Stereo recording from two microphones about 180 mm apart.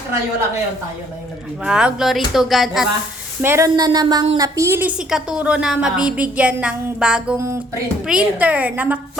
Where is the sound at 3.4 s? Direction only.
15° right (ahead or behind).